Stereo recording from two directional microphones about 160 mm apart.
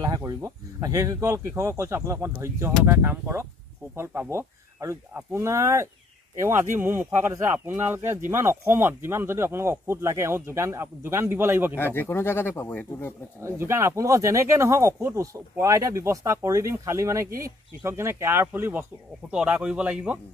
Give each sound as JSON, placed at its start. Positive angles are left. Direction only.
{"t": 0.0, "sound": "speech", "side_deg": -20}
{"t": 11.8, "sound": "speech", "side_deg": 15}
{"t": 13.6, "sound": "speech", "side_deg": -15}